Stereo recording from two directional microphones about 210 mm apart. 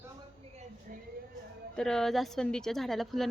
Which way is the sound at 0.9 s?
40° right (ahead or behind).